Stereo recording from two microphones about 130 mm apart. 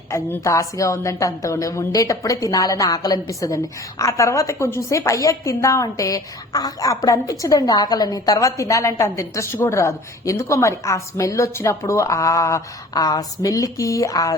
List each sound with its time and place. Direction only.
0.1 s a woman's voice: 25° left (ahead or behind)